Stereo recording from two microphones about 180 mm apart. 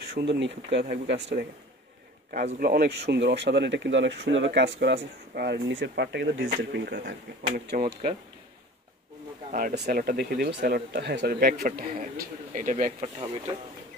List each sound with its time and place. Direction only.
0.1 s speech: 75° right (ahead or behind)
2.3 s speech: 50° right (ahead or behind); by 7.0 s 75° right (ahead or behind)
7.5 s speech: 55° right (ahead or behind)
9.5 s speech: 50° right (ahead or behind)